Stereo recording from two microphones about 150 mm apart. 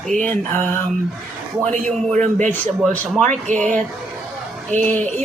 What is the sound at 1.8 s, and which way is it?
A man's voice, 55° right (ahead or behind).